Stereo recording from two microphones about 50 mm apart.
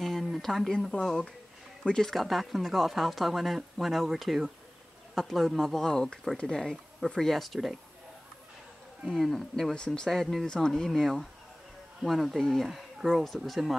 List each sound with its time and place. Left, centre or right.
0.0 s a sound: centre
1.9 s speech: centre
2.1 s speech: centre
5.9 s speech: centre
9.1 s speech: centre